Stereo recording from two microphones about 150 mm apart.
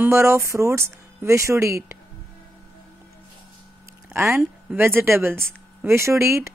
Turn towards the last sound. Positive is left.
turn(degrees=-20)  # may be behind; listen again after turning